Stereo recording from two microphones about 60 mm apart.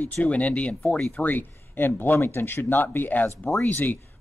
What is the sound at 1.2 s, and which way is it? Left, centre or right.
Speech, left.